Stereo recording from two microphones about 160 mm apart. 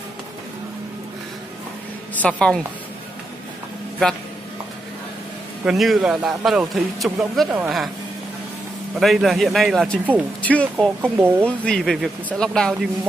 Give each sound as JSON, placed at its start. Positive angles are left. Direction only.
{"t": 2.2, "sound": "speech", "side_deg": 5}
{"t": 5.7, "sound": "a man's voice", "side_deg": 0}
{"t": 9.0, "sound": "a man's voice", "side_deg": 0}
{"t": 10.4, "sound": "speech", "side_deg": 10}
{"t": 11.0, "sound": "speech", "side_deg": -15}
{"t": 11.4, "sound": "a man's voice", "side_deg": 5}